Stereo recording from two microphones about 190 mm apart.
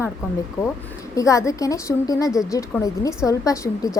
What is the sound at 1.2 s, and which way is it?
A woman's voice, 15° left (ahead or behind).